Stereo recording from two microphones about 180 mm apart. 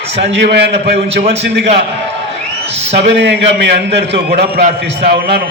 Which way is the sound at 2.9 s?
70° right (ahead or behind).